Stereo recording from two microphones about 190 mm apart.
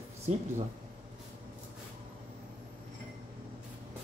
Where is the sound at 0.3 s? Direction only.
35° right (ahead or behind).